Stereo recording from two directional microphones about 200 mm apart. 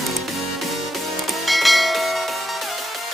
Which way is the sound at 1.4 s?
Centre (ahead or behind).